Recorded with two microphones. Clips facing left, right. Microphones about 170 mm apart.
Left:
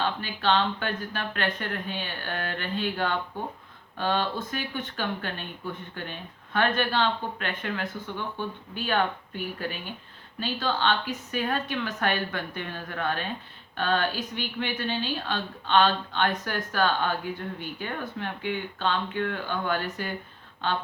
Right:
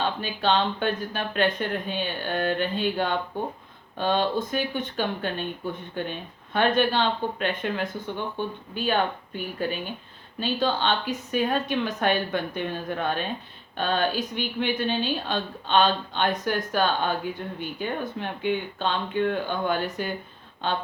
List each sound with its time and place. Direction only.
0.0 s a woman's voice: 20° right (ahead or behind)